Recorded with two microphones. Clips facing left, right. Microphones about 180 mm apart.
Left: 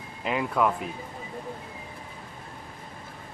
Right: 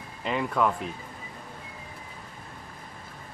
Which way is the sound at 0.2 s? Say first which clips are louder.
Left 1 dB; 5° left (ahead or behind).